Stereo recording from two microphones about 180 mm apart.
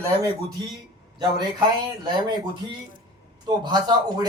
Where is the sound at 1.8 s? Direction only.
25° right (ahead or behind).